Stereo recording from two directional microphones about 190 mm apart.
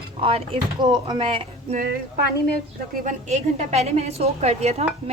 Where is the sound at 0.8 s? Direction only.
25° right (ahead or behind).